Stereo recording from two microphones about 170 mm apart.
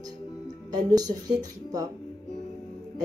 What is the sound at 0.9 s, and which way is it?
Speech, 20° right (ahead or behind).